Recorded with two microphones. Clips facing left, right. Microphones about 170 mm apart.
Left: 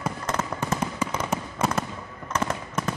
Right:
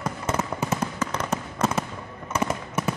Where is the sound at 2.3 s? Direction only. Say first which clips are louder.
Right 1 dB; 10° right (ahead or behind).